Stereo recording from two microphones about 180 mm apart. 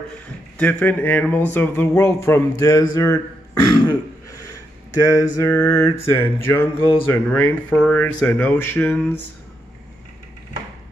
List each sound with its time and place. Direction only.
0.6 s speech: 5° left (ahead or behind)
3.6 s throat clearing: 20° left (ahead or behind)
5.0 s speech: 15° left (ahead or behind)